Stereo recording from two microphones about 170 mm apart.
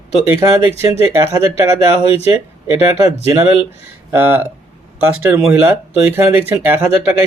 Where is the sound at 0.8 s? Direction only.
15° right (ahead or behind).